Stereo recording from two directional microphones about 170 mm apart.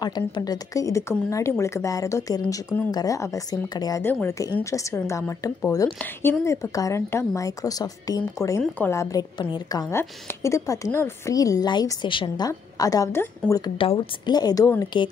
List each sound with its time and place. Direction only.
0.0 s a woman's voice: 25° left (ahead or behind)
13.7 s a woman's voice: 30° left (ahead or behind)